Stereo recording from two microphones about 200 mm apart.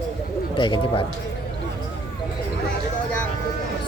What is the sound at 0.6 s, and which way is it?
Speech, 25° left (ahead or behind).